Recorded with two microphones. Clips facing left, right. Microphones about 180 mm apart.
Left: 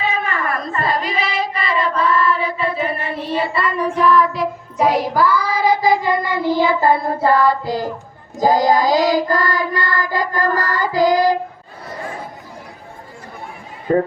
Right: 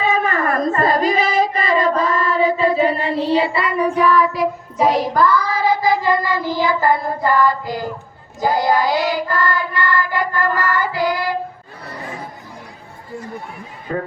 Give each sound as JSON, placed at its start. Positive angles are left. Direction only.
{"t": 0.0, "sound": "a sound", "side_deg": -40}
{"t": 1.9, "sound": "choir", "side_deg": -40}
{"t": 2.8, "sound": "child singing", "side_deg": -35}
{"t": 3.3, "sound": "child singing", "side_deg": -15}